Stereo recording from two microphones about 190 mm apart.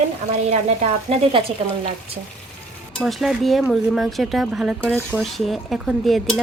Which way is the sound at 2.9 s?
Centre (ahead or behind).